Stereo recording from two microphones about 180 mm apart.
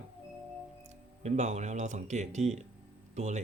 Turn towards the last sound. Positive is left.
turn(degrees=-40)  # may be behind; listen again after turning